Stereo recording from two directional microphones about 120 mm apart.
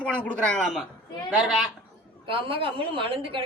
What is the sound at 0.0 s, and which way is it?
Speech, 10° left (ahead or behind).